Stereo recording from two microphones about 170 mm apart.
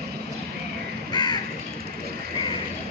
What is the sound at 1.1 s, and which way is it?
Crow, 25° left (ahead or behind).